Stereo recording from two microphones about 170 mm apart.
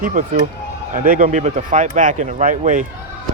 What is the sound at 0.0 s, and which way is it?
Speech, 55° right (ahead or behind).